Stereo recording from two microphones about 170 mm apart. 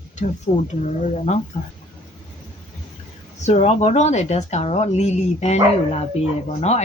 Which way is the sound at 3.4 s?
40° left (ahead or behind).